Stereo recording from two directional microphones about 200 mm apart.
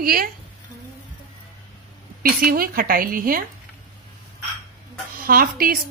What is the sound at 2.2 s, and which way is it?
A woman's voice, 45° right (ahead or behind).